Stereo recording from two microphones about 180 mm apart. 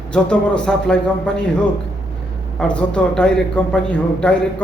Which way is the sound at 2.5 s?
5° left (ahead or behind).